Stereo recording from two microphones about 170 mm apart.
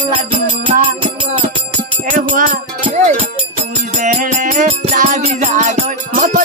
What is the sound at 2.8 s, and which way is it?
Music, 40° right (ahead or behind).